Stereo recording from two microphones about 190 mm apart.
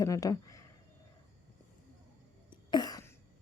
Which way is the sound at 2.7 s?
20° left (ahead or behind).